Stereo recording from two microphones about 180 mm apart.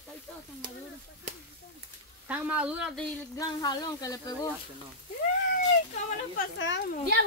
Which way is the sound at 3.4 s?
20° left (ahead or behind).